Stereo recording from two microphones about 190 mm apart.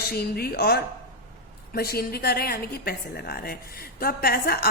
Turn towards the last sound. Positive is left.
turn(degrees=55)  # may be behind; listen again after turning